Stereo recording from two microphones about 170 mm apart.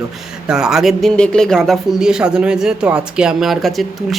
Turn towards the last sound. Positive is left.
turn(degrees=0)  # may be behind; listen again after turning